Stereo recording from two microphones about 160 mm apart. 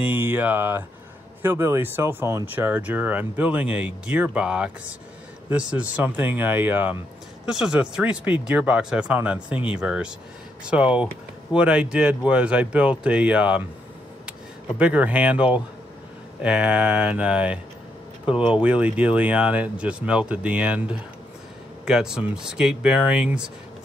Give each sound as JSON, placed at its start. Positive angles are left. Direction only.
{"t": 0.0, "sound": "speech", "side_deg": -10}
{"t": 14.8, "sound": "speech", "side_deg": -10}
{"t": 18.2, "sound": "speech", "side_deg": 35}
{"t": 18.5, "sound": "speech", "side_deg": -10}